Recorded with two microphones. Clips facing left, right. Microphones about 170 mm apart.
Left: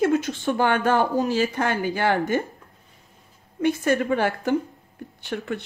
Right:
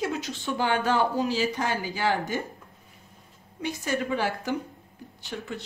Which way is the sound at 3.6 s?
55° left (ahead or behind).